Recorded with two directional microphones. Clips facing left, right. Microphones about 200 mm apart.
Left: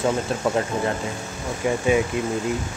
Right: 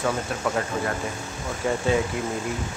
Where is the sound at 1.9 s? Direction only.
20° left (ahead or behind).